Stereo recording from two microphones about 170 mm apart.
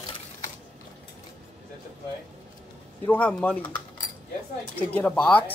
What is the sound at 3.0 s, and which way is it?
Speech, 10° left (ahead or behind).